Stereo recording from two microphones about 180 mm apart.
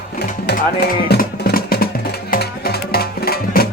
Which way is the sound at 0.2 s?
65° left (ahead or behind).